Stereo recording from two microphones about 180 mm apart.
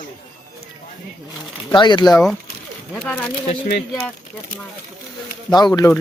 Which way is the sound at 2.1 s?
5° left (ahead or behind).